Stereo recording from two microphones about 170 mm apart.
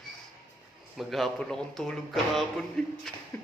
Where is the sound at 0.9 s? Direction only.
Centre (ahead or behind).